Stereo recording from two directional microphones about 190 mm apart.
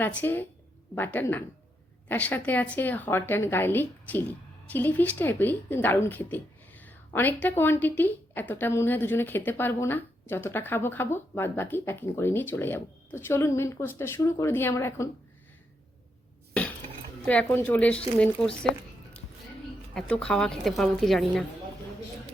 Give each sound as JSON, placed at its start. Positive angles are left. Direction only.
{"t": 0.0, "sound": "a woman's voice", "side_deg": 10}
{"t": 16.6, "sound": "dishes", "side_deg": 5}
{"t": 17.2, "sound": "a woman's voice", "side_deg": 5}
{"t": 19.9, "sound": "a woman's voice", "side_deg": 5}